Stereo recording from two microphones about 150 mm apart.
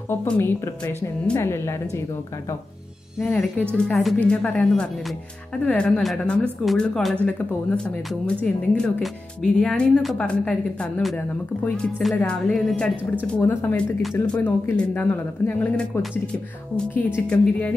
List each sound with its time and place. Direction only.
0.1 s speech: 15° left (ahead or behind)
3.2 s speech: 10° left (ahead or behind)